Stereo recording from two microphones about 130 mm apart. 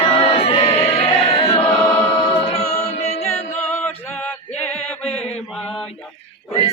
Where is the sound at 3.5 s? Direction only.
15° left (ahead or behind).